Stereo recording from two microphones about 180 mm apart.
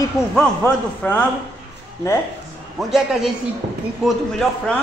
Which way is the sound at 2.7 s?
Centre (ahead or behind).